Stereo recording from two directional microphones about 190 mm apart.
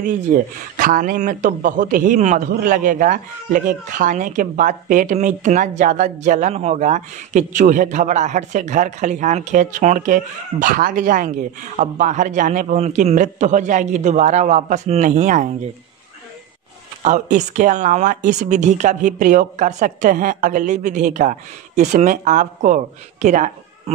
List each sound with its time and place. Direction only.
0.3 s a man's voice: 45° right (ahead or behind)
17.0 s a man's voice: 40° right (ahead or behind)